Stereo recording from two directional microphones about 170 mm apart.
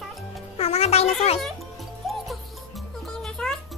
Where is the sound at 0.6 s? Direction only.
35° left (ahead or behind).